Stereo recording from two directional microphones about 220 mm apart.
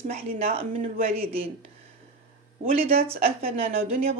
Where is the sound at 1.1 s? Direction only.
25° right (ahead or behind).